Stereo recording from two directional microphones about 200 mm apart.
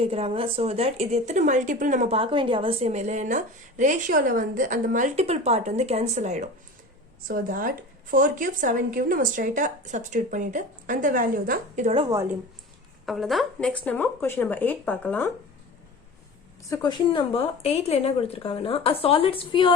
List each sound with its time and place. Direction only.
0.0 s a woman's voice: 30° right (ahead or behind)
7.3 s a woman's voice: 45° right (ahead or behind)
11.9 s speech: 20° right (ahead or behind)
13.1 s speech: centre (ahead or behind)
16.6 s speech: 15° left (ahead or behind)
17.1 s a woman's voice: 25° left (ahead or behind)